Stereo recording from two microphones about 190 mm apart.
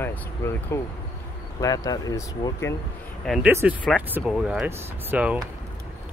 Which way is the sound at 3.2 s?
Centre (ahead or behind).